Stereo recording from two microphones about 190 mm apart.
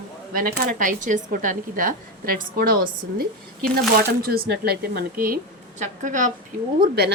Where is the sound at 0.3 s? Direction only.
50° right (ahead or behind).